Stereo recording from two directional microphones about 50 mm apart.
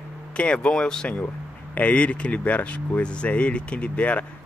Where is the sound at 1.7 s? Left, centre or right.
Left.